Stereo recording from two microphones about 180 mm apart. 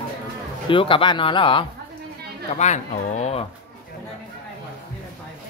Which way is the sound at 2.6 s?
40° left (ahead or behind).